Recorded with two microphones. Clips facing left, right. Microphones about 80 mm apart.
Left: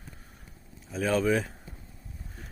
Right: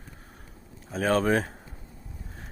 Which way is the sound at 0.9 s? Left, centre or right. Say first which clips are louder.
Right 2 dB; right.